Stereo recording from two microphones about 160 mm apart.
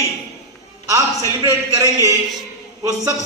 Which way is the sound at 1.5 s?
20° right (ahead or behind).